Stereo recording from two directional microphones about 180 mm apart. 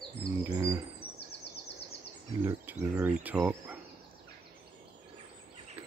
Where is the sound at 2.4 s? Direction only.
15° right (ahead or behind).